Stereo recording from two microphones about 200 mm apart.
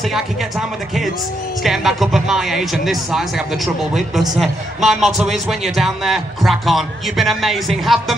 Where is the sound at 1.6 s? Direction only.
Centre (ahead or behind).